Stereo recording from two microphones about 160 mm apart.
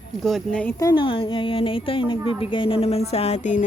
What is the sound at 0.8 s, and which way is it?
A woman's voice, 30° left (ahead or behind).